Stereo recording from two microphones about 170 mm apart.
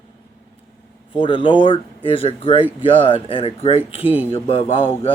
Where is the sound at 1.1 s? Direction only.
30° left (ahead or behind).